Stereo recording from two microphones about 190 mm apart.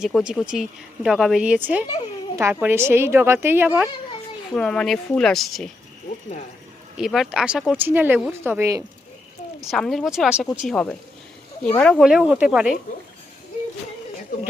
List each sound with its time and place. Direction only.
0.0 s speech: 5° right (ahead or behind)
4.5 s speech: 5° left (ahead or behind)
7.0 s speech: centre (ahead or behind)
9.6 s speech: centre (ahead or behind)